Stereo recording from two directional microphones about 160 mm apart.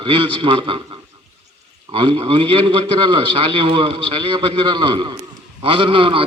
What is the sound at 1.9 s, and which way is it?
A man's voice, 35° right (ahead or behind).